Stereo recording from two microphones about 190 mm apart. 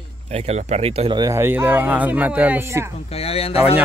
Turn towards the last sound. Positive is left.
turn(degrees=30)  # may be behind; listen again after turning